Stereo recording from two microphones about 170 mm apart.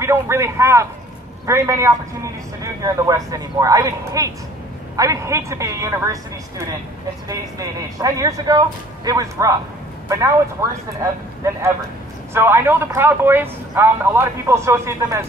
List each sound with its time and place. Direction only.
0.0 s a man's voice: 15° right (ahead or behind)
7.2 s speech: 20° right (ahead or behind)
12.4 s a man's voice: 15° right (ahead or behind)